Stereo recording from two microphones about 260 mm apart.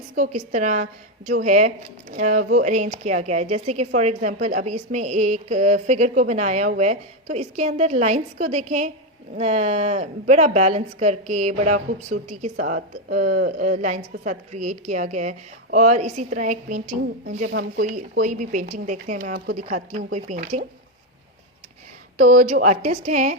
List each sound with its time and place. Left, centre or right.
0.2 s a woman's voice: right
22.4 s a woman's voice: right